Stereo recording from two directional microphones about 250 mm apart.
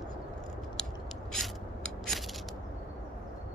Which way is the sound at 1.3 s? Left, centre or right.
Centre.